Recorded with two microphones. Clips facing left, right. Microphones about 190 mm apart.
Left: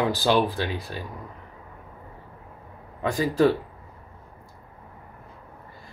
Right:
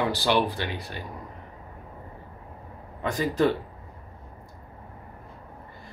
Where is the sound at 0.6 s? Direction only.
20° right (ahead or behind).